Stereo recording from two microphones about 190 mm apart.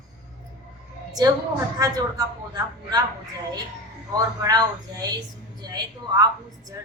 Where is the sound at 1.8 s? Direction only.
20° right (ahead or behind).